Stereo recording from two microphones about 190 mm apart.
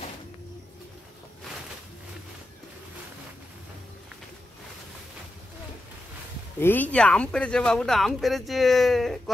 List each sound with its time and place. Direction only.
6.6 s speech: 10° left (ahead or behind)